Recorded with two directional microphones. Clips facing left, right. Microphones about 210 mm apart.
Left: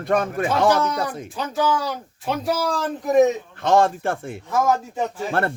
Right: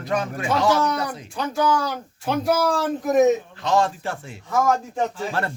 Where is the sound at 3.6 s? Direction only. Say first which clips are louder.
Left 7 dB; 50° left (ahead or behind).